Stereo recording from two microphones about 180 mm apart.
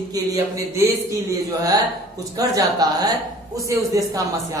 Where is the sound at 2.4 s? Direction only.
20° right (ahead or behind).